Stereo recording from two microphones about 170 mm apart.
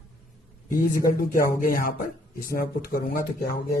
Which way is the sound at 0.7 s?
55° left (ahead or behind).